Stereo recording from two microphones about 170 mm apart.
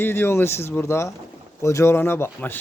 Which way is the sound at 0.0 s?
15° left (ahead or behind).